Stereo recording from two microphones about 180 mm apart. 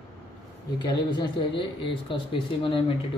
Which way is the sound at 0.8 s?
25° left (ahead or behind).